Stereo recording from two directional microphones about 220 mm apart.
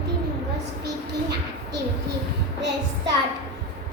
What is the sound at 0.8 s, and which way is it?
Music, 50° right (ahead or behind).